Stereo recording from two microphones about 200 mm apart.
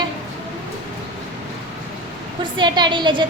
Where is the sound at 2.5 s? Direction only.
20° right (ahead or behind).